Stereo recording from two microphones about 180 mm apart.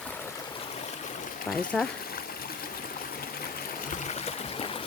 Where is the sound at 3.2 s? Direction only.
50° left (ahead or behind); by 4.8 s 30° left (ahead or behind).